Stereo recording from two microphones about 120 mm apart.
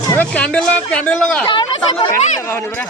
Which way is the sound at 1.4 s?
40° left (ahead or behind).